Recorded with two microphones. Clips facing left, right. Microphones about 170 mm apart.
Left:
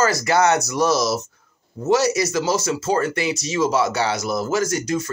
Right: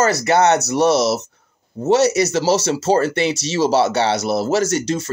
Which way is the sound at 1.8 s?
25° right (ahead or behind).